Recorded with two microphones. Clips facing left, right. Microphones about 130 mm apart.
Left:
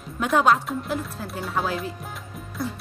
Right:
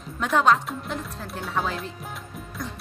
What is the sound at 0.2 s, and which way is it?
Speech, 5° left (ahead or behind).